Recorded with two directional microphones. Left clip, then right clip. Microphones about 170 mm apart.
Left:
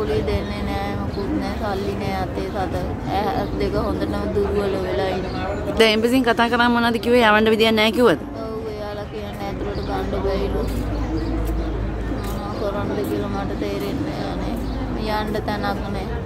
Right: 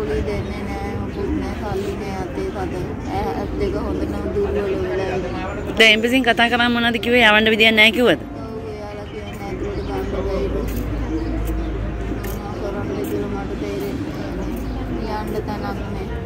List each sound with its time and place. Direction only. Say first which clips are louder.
3.2 s speech: left 1 dB; 10° left (ahead or behind)
5.9 s speech: right 3 dB; 10° left (ahead or behind)
15.0 s a sound: left 3 dB; 35° left (ahead or behind)